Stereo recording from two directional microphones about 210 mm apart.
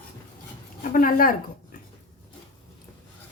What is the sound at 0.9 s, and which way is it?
Speech, 40° left (ahead or behind).